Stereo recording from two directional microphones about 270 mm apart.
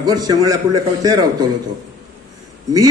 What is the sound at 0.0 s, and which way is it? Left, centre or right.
A man's voice, centre.